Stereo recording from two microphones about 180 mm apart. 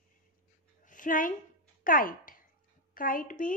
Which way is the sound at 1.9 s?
50° left (ahead or behind).